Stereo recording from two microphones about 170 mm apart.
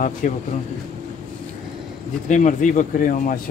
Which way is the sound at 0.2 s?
50° left (ahead or behind).